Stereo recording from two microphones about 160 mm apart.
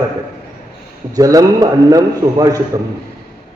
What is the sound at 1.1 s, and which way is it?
A man's voice, 20° right (ahead or behind).